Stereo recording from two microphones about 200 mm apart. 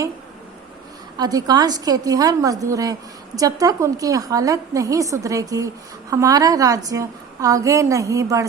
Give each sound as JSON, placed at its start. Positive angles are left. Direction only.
{"t": 1.1, "sound": "a woman's voice", "side_deg": -20}